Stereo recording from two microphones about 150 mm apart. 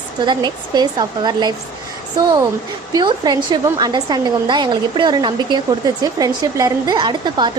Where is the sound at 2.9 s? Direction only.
30° right (ahead or behind).